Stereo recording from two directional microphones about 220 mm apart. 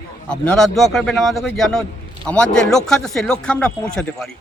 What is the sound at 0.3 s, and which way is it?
Speech, 5° left (ahead or behind).